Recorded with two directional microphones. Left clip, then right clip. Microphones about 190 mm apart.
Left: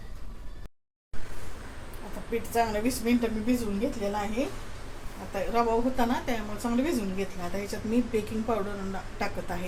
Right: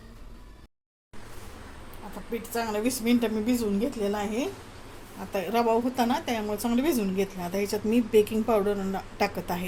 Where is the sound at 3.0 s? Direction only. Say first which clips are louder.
Right 2 dB; 35° right (ahead or behind).